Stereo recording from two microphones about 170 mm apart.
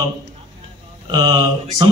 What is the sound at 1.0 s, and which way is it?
Speech, 25° right (ahead or behind).